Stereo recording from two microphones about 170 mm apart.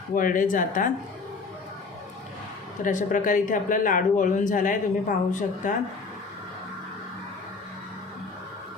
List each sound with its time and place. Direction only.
0.1 s speech: 55° left (ahead or behind)
2.8 s speech: 50° left (ahead or behind)